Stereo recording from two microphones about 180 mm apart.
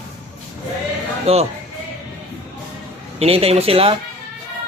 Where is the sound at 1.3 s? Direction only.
35° right (ahead or behind).